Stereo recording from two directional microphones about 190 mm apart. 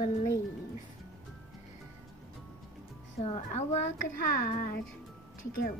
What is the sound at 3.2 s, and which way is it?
A woman's voice, 35° left (ahead or behind).